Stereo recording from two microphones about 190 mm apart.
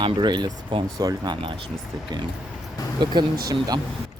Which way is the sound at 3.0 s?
20° right (ahead or behind).